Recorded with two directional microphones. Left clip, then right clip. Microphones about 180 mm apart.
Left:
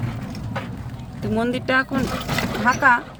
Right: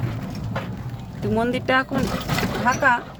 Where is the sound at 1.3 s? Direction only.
10° left (ahead or behind).